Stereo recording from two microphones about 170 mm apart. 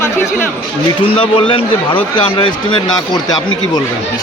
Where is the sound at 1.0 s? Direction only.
30° left (ahead or behind).